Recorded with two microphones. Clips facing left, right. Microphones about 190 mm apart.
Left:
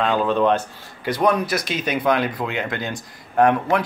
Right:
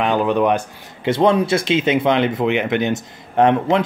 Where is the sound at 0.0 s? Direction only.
15° right (ahead or behind).